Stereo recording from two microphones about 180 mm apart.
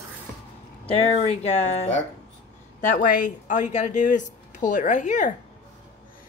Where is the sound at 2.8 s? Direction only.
50° left (ahead or behind).